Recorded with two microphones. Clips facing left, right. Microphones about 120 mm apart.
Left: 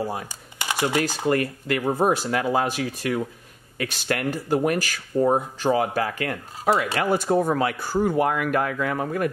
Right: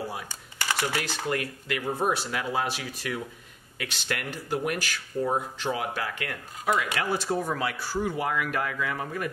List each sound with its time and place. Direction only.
0.0 s speech: 45° left (ahead or behind)
0.3 s typing: 15° left (ahead or behind)
0.9 s speech: 40° left (ahead or behind)
6.7 s speech: 30° left (ahead or behind)
7.1 s speech: 45° left (ahead or behind)